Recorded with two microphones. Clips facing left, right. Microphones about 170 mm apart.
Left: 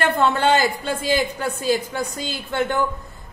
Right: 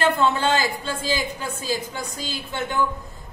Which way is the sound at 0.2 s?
55° left (ahead or behind).